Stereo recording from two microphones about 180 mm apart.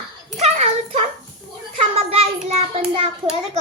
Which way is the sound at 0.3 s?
35° right (ahead or behind).